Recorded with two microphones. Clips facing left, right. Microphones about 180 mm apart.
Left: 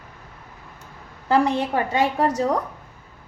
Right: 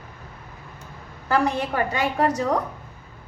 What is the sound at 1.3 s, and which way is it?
Speech, 25° left (ahead or behind).